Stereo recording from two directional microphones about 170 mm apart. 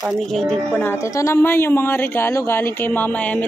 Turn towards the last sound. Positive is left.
turn(degrees=10)  # may be behind; listen again after turning